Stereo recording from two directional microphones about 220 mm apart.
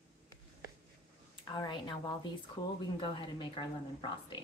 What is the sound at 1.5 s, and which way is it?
A woman's voice, 20° left (ahead or behind).